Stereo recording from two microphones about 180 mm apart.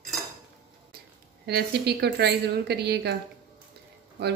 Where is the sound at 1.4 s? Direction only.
65° right (ahead or behind).